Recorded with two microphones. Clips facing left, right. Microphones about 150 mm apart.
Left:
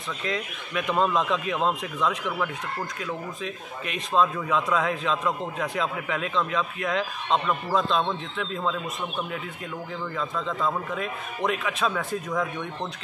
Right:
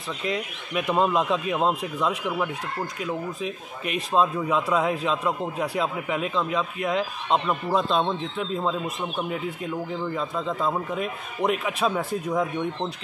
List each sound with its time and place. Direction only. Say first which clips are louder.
0.3 s a man's voice: right 2 dB; 10° right (ahead or behind)
3.8 s a man's voice: right 1 dB; 5° right (ahead or behind)
10.1 s a man's voice: left 1 dB; 20° right (ahead or behind)
12.0 s speech: right 3 dB; 30° right (ahead or behind)